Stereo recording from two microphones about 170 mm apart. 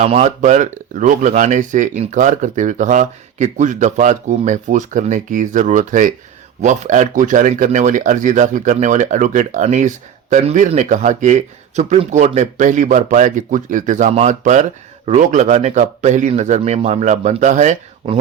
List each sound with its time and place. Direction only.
0.0 s speech: 40° right (ahead or behind)